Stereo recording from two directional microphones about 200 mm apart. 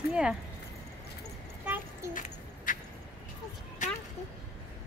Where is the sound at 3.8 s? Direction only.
40° left (ahead or behind).